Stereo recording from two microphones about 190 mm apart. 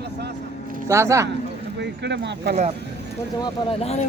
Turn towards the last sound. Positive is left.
turn(degrees=35)  # may be behind; listen again after turning